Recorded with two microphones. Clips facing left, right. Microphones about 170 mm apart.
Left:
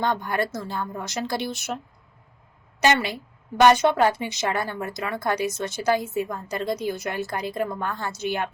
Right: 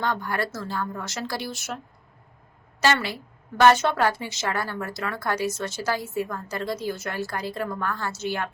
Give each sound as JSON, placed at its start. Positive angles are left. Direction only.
{"t": 0.0, "sound": "a woman's voice", "side_deg": 20}
{"t": 2.8, "sound": "a woman's voice", "side_deg": 20}